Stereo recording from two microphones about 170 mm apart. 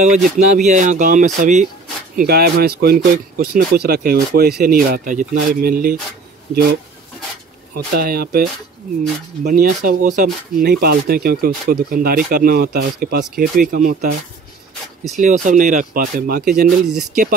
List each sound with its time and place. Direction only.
0.6 s speech: 45° right (ahead or behind)
2.1 s speech: 65° right (ahead or behind)
9.4 s speech: 55° right (ahead or behind)
15.1 s speech: 45° right (ahead or behind); by 16.6 s 65° right (ahead or behind)
16.6 s speech: centre (ahead or behind)